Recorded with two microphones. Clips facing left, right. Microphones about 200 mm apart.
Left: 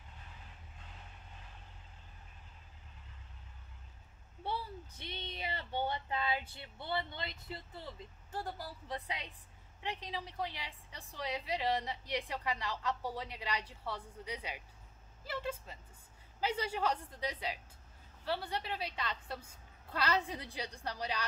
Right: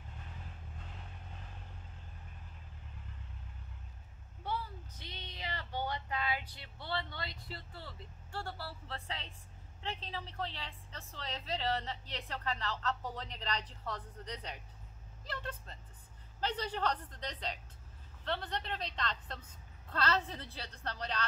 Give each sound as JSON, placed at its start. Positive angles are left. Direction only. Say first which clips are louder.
{"t": 4.4, "sound": "a sound", "louder": "even", "side_deg": 30}
{"t": 5.0, "sound": "speech", "louder": "left 5 dB", "side_deg": 60}
{"t": 5.4, "sound": "a woman's voice", "louder": "left 2 dB", "side_deg": 25}